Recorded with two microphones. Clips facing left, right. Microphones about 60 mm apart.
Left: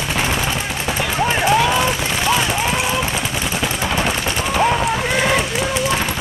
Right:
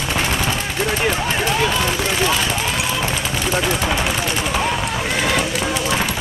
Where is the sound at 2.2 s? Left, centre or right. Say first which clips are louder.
Left 4 dB; centre.